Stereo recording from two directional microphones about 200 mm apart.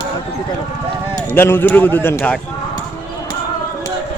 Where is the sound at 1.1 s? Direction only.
10° left (ahead or behind).